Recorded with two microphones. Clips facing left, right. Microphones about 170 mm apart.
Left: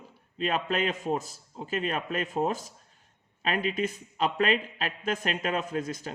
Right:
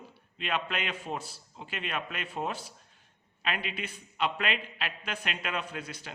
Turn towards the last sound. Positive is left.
turn(degrees=45)  # may be behind; listen again after turning